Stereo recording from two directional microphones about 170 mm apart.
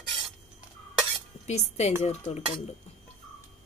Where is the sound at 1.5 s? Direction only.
40° left (ahead or behind).